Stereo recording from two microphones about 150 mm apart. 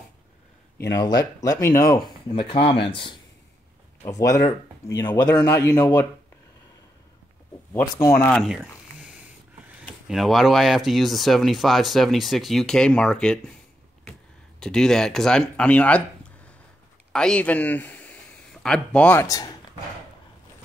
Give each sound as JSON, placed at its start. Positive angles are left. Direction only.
{"t": 0.8, "sound": "speech", "side_deg": 25}
{"t": 2.3, "sound": "speech", "side_deg": 35}
{"t": 4.0, "sound": "speech", "side_deg": 20}
{"t": 7.8, "sound": "speech", "side_deg": 20}
{"t": 8.3, "sound": "speech", "side_deg": 0}
{"t": 8.5, "sound": "a sound", "side_deg": -10}
{"t": 10.0, "sound": "speech", "side_deg": 0}
{"t": 14.6, "sound": "speech", "side_deg": 5}
{"t": 17.1, "sound": "a man's voice", "side_deg": 5}
{"t": 19.2, "sound": "speech", "side_deg": 25}